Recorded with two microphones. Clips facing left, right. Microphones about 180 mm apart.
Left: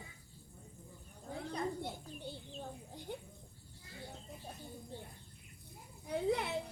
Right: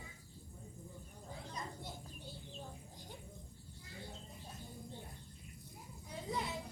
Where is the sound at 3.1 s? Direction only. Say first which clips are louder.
Left 10 dB; 60° left (ahead or behind).